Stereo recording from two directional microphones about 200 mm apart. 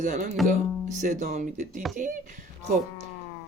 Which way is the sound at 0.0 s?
40° right (ahead or behind).